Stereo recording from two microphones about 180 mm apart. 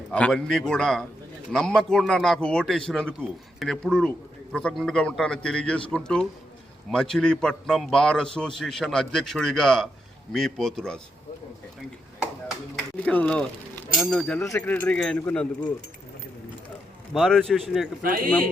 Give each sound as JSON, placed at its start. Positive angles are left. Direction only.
{"t": 0.1, "sound": "a man's voice", "side_deg": 5}
{"t": 13.1, "sound": "speech", "side_deg": 5}
{"t": 17.2, "sound": "a man's voice", "side_deg": 0}
{"t": 18.0, "sound": "speech", "side_deg": -50}